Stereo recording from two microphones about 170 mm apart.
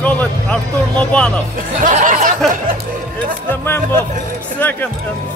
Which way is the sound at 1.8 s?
50° right (ahead or behind).